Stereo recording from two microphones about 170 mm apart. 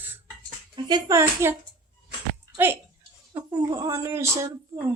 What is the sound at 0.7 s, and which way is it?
Speech, 25° right (ahead or behind).